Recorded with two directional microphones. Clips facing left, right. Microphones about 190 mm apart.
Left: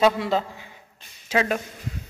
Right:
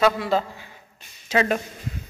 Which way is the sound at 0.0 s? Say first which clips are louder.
Even; 20° left (ahead or behind).